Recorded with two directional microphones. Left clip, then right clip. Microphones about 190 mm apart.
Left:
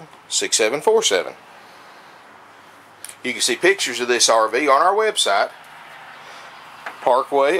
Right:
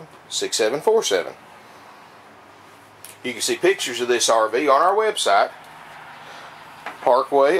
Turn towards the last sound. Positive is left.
turn(degrees=10)  # may be behind; listen again after turning